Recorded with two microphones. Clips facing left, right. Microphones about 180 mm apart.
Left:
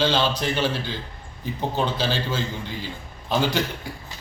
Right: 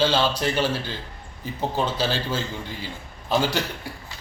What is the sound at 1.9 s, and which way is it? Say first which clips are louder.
A man's voice: even; 10° right (ahead or behind).